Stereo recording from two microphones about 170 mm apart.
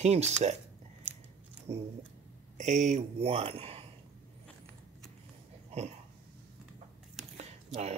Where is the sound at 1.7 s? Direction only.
35° right (ahead or behind).